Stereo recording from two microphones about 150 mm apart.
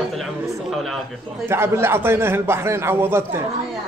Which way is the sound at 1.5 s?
15° right (ahead or behind).